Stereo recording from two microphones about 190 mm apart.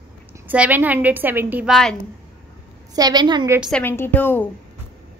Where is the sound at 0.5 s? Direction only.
10° right (ahead or behind).